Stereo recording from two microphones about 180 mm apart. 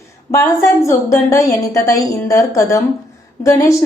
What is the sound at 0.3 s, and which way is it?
A woman's voice, 15° left (ahead or behind).